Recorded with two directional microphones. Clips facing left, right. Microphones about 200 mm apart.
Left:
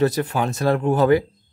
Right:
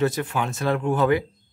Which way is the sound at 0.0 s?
35° left (ahead or behind).